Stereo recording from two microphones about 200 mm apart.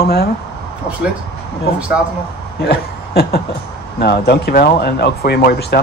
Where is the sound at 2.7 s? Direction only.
50° left (ahead or behind).